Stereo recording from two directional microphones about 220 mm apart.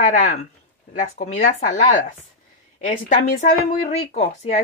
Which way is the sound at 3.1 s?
30° left (ahead or behind).